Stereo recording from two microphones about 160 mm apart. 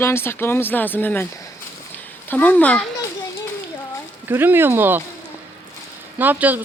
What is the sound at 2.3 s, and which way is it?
Speech, 10° left (ahead or behind).